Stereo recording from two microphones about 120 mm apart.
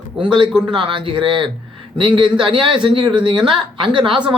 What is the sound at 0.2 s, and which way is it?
A woman's voice, 45° right (ahead or behind).